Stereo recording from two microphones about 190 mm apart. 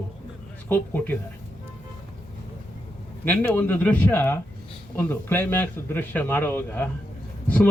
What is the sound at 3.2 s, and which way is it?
A man's voice, 10° left (ahead or behind).